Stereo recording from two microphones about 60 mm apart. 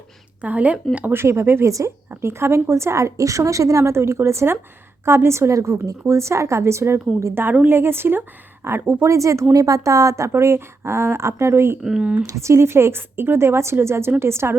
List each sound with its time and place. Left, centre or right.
0.4 s speech: right
1.1 s a woman's voice: right
11.8 s speech: centre
12.2 s a woman's voice: right